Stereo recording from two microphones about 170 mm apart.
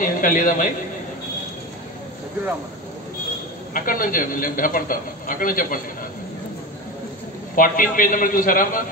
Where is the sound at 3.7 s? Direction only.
55° left (ahead or behind).